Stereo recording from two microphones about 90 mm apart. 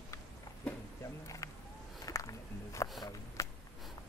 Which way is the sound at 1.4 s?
35° left (ahead or behind).